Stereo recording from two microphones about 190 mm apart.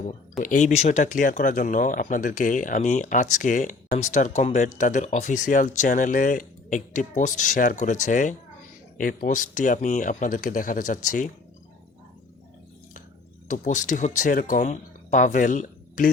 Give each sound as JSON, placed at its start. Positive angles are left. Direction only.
{"t": 0.4, "sound": "speech", "side_deg": 40}
{"t": 13.5, "sound": "speech", "side_deg": 40}